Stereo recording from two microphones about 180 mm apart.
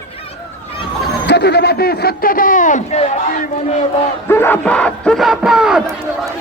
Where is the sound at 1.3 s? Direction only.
65° left (ahead or behind); by 3.1 s 40° left (ahead or behind).